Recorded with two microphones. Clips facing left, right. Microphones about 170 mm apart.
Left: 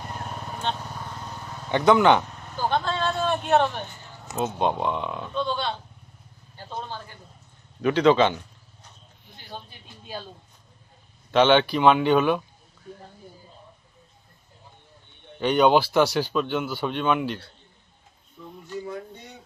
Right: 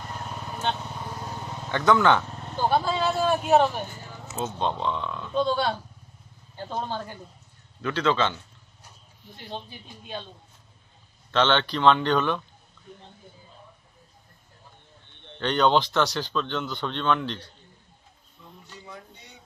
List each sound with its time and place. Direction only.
0.1 s vehicle: 5° left (ahead or behind); by 1.6 s 15° right (ahead or behind)
1.7 s speech: 20° left (ahead or behind)
2.4 s vehicle: 20° right (ahead or behind)
2.7 s speech: 5° right (ahead or behind)
4.3 s speech: 15° left (ahead or behind)
5.3 s speech: 40° right (ahead or behind)
7.8 s speech: 15° left (ahead or behind)
11.3 s speech: 15° left (ahead or behind)
15.2 s speech: 10° left (ahead or behind)
18.8 s speech: 50° left (ahead or behind)